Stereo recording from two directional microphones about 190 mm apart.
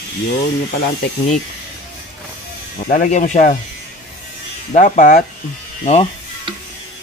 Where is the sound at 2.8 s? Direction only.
40° left (ahead or behind).